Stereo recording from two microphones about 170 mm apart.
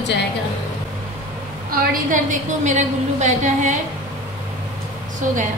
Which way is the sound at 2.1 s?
45° right (ahead or behind).